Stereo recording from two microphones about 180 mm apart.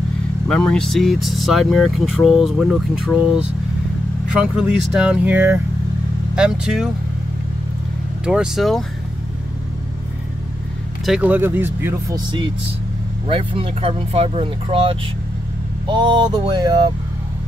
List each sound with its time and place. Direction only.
0.5 s speech: 5° left (ahead or behind)
8.3 s speech: centre (ahead or behind)
11.1 s speech: 5° right (ahead or behind)
13.3 s speech: 30° right (ahead or behind)
15.9 s a sound: 25° right (ahead or behind)